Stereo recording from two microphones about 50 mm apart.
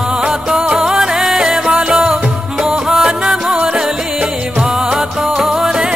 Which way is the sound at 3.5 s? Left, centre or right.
Right.